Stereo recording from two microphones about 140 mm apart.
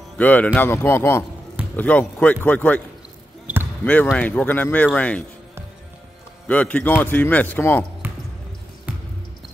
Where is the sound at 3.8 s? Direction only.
10° left (ahead or behind).